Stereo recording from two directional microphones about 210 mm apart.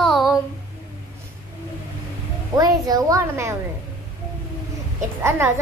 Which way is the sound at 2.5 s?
15° right (ahead or behind).